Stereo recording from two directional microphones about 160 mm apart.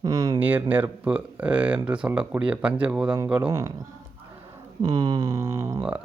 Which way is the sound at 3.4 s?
20° right (ahead or behind).